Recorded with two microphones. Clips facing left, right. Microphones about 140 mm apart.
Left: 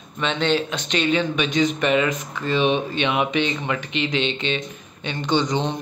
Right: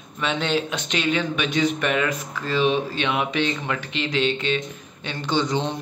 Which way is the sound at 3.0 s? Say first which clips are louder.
Left 2 dB; 15° left (ahead or behind).